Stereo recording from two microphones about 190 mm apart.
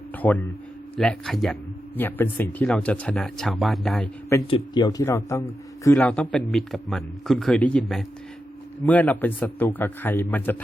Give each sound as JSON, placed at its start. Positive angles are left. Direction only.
{"t": 0.2, "sound": "speech", "side_deg": 10}
{"t": 4.4, "sound": "a man's voice", "side_deg": 25}